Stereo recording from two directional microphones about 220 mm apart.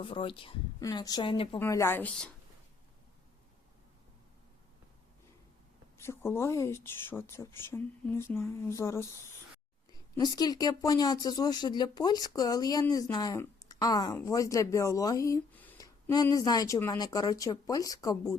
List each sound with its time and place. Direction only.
0.0 s speech: 25° left (ahead or behind)
1.5 s speech: 10° left (ahead or behind)
6.0 s speech: 10° left (ahead or behind)